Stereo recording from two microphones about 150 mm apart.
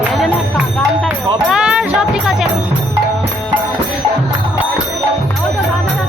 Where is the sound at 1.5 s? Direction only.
5° right (ahead or behind).